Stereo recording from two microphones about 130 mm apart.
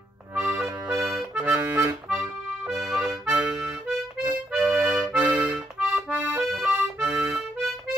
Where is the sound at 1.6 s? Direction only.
25° right (ahead or behind).